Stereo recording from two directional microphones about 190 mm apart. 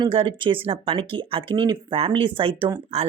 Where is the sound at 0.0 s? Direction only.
25° right (ahead or behind).